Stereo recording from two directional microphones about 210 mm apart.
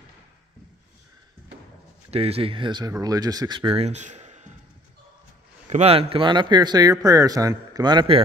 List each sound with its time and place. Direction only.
2.0 s speech: 30° right (ahead or behind)
5.7 s a man's voice: 30° right (ahead or behind)